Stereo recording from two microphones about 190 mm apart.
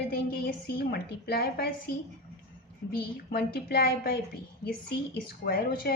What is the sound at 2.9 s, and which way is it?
Speech, 55° left (ahead or behind).